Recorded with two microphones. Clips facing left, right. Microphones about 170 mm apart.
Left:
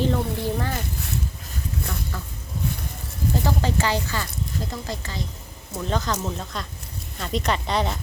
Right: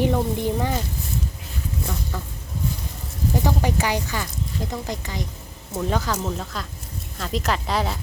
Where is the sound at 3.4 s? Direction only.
15° right (ahead or behind).